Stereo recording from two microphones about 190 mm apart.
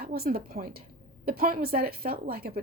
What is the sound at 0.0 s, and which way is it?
Speech, 50° right (ahead or behind).